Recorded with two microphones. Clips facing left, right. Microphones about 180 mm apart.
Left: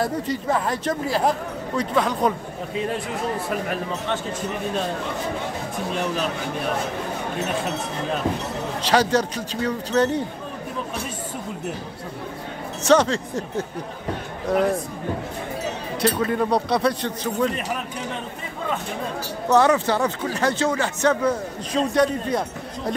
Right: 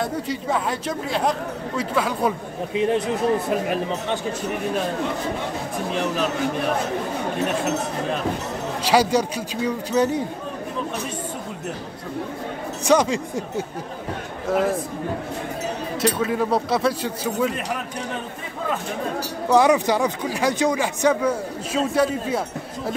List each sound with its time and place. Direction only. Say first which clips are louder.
0.0 s a man's voice: left 1 dB; centre (ahead or behind)
2.7 s speech: right 6 dB; 20° right (ahead or behind)
8.8 s speech: right 1 dB; 10° right (ahead or behind)
12.8 s a man's voice: left 1 dB; 10° right (ahead or behind)
16.0 s a man's voice: left 1 dB; centre (ahead or behind)
19.5 s speech: right 1 dB; 10° right (ahead or behind)